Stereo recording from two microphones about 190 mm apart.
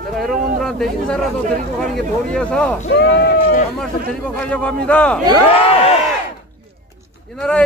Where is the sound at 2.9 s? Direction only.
65° left (ahead or behind).